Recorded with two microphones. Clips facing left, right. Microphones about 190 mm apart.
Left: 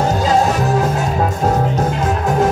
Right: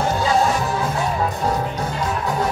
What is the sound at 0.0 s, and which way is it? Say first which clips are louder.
Music: left 4 dB; 40° left (ahead or behind).